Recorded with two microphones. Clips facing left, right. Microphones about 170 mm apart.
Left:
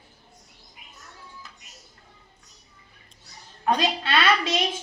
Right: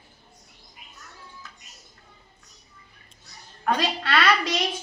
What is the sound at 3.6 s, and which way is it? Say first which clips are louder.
A woman's voice: left 1 dB; 20° left (ahead or behind).